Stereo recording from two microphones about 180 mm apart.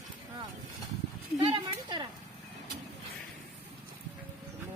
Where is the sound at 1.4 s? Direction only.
25° right (ahead or behind).